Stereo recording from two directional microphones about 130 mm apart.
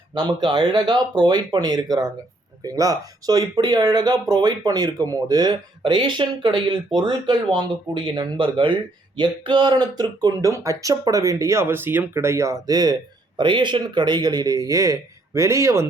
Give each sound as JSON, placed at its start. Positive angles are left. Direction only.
{"t": 0.1, "sound": "speech", "side_deg": -35}